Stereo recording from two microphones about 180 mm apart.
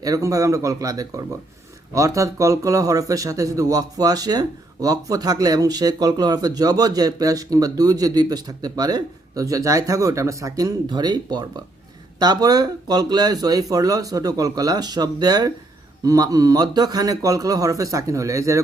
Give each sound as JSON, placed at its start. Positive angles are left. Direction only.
{"t": 0.0, "sound": "speech", "side_deg": -20}